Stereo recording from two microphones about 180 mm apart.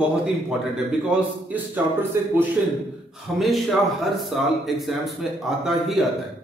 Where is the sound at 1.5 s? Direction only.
10° right (ahead or behind).